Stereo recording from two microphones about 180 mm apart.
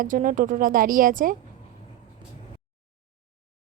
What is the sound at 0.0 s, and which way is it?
A woman's voice, 50° right (ahead or behind).